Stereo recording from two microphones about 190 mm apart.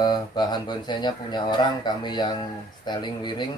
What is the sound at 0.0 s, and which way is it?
Speech, 20° left (ahead or behind).